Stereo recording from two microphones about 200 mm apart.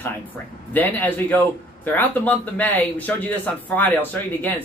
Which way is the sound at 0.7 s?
10° left (ahead or behind).